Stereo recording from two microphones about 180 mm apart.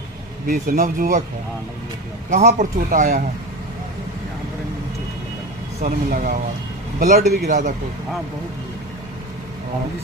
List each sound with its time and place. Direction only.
0.4 s speech: 55° right (ahead or behind)
2.3 s speech: 45° right (ahead or behind)
5.8 s speech: 50° right (ahead or behind)